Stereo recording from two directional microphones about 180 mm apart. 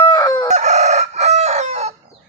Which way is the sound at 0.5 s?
40° right (ahead or behind).